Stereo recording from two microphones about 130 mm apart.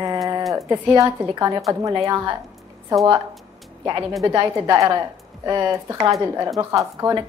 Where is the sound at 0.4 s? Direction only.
Centre (ahead or behind).